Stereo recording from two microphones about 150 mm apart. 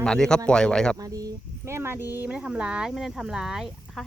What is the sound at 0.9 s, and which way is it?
Speech, 25° right (ahead or behind).